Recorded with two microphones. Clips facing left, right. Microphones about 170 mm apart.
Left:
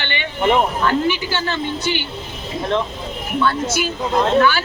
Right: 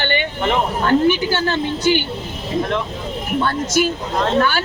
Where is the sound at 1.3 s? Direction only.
50° right (ahead or behind).